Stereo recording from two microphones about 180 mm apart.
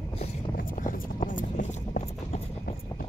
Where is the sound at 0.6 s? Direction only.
50° left (ahead or behind).